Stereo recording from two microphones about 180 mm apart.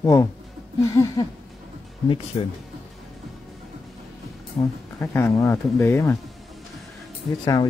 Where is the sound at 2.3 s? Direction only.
30° left (ahead or behind).